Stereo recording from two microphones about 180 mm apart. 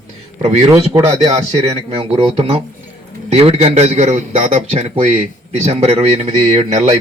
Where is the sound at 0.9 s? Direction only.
20° right (ahead or behind).